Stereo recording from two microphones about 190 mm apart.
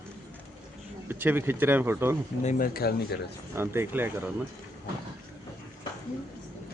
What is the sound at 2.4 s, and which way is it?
Speech, 45° left (ahead or behind).